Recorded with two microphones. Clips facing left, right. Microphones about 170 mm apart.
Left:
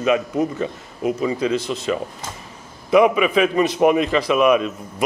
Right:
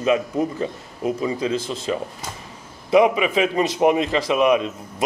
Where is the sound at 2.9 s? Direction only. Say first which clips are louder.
Left 2 dB; 25° right (ahead or behind).